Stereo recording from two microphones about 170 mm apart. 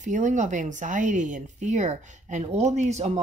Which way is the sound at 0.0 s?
45° right (ahead or behind).